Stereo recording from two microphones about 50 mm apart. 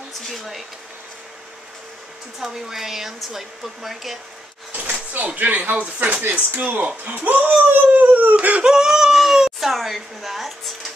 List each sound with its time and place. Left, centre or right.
0.3 s speech: centre
2.4 s speech: centre
4.7 s speech: right
8.6 s speech: centre